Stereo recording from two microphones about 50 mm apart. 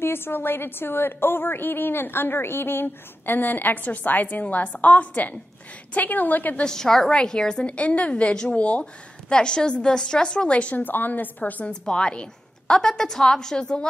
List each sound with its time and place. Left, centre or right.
0.0 s a woman's voice: left
6.6 s a woman's voice: centre
7.6 s a woman's voice: left
10.8 s a woman's voice: left
11.7 s a woman's voice: centre